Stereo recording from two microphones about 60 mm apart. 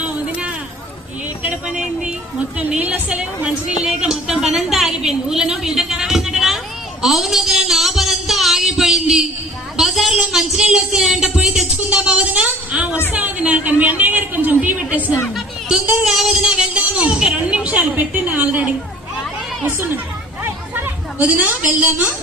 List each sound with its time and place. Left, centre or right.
0.0 s a sound: right
1.4 s vehicle: right
2.6 s a woman's voice: right; by 6.6 s centre
7.0 s a sound: centre
10.2 s a woman's voice: centre
16.0 s music: centre
16.7 s a sound: centre
17.3 s music: centre
18.1 s a woman's voice: right
20.4 s hubbub: right
21.2 s a woman's voice: right